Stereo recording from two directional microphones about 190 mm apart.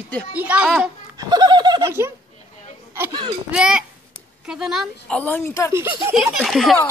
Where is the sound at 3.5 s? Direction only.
5° right (ahead or behind).